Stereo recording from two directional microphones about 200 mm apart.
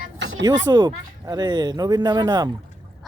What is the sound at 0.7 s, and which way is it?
Speech, 20° right (ahead or behind).